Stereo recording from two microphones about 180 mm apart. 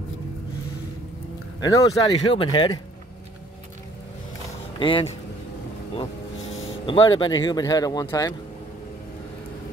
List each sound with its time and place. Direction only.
1.6 s speech: 20° left (ahead or behind)
4.7 s speech: 30° left (ahead or behind)
6.5 s a sound: 90° left
6.9 s speech: 25° left (ahead or behind)